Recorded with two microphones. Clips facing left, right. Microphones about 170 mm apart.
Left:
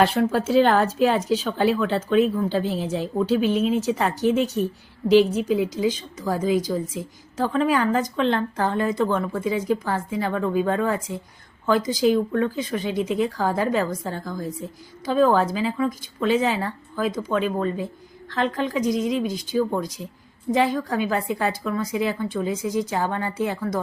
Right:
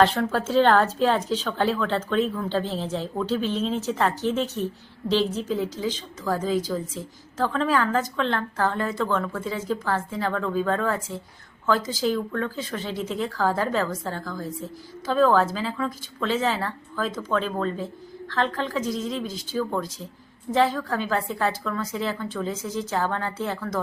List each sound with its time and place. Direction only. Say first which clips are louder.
0.0 s speech: left 1 dB; 10° left (ahead or behind)